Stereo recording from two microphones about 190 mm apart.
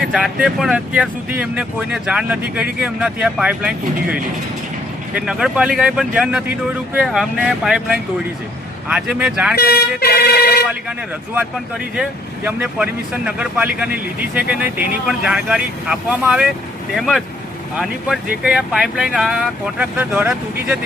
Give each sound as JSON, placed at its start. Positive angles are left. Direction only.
{"t": 0.0, "sound": "speech", "side_deg": 0}
{"t": 9.6, "sound": "speech", "side_deg": 55}
{"t": 12.5, "sound": "a man's voice", "side_deg": -10}